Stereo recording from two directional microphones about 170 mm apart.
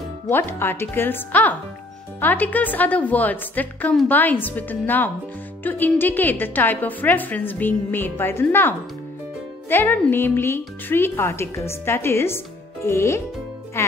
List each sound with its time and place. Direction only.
0.3 s a woman's voice: 15° left (ahead or behind)